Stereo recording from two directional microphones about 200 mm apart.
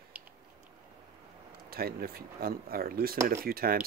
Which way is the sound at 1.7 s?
50° right (ahead or behind).